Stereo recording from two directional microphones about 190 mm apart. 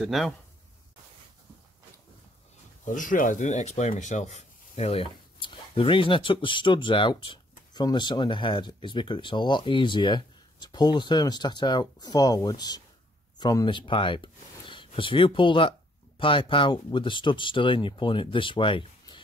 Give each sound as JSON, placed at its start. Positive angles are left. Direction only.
{"t": 0.0, "sound": "speech", "side_deg": 0}
{"t": 2.8, "sound": "speech", "side_deg": 45}